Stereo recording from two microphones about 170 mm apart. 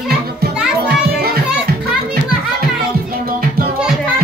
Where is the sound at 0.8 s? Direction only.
65° right (ahead or behind).